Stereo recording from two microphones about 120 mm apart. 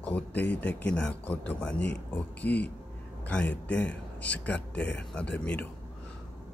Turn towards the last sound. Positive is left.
turn(degrees=10)  # may be behind; listen again after turning